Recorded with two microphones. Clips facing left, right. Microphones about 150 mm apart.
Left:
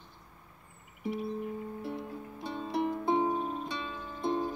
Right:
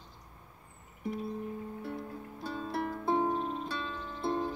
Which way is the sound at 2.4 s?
20° left (ahead or behind).